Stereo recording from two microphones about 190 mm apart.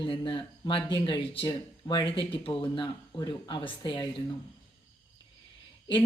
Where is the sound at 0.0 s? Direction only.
25° left (ahead or behind).